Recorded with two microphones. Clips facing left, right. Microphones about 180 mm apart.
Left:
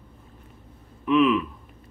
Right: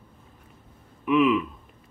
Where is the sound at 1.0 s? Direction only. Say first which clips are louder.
Left 1 dB; 15° right (ahead or behind).